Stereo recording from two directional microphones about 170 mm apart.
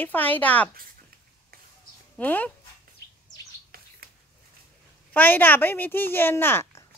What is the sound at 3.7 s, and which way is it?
Bird, 60° right (ahead or behind).